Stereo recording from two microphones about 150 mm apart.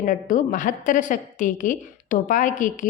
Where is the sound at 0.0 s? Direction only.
65° left (ahead or behind).